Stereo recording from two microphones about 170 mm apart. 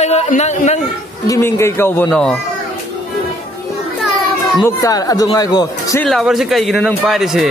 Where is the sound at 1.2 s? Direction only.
15° left (ahead or behind).